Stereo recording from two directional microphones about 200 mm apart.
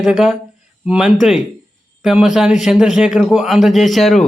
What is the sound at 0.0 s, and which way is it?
A man's voice, centre (ahead or behind).